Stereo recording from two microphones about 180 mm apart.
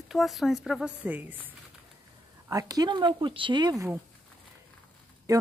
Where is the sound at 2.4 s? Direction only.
20° right (ahead or behind).